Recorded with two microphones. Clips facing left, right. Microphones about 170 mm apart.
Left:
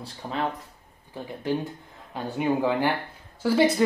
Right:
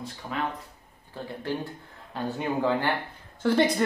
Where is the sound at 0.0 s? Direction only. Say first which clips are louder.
Left 2 dB; 30° left (ahead or behind).